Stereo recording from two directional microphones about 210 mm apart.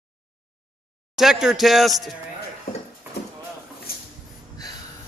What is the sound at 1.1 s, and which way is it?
Speech, centre (ahead or behind).